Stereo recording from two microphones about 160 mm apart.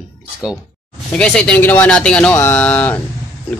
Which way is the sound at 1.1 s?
5° left (ahead or behind).